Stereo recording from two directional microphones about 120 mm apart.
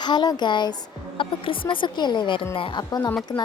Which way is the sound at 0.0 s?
35° left (ahead or behind).